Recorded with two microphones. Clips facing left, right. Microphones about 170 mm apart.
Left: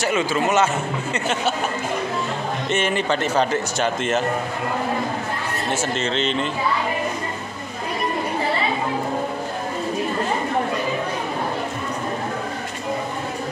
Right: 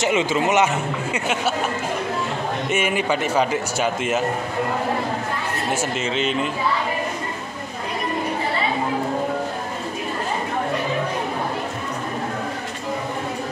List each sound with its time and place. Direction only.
0.0 s a man's voice: 20° right (ahead or behind)
1.1 s speech: 5° right (ahead or behind)
2.7 s speech: 10° right (ahead or behind)
5.7 s speech: 10° right (ahead or behind)